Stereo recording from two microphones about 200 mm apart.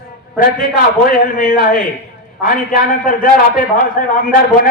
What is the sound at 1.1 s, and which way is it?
A man's voice, 45° left (ahead or behind).